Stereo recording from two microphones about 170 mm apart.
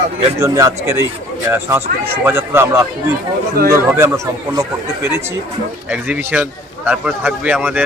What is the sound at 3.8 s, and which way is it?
Speech, 15° right (ahead or behind).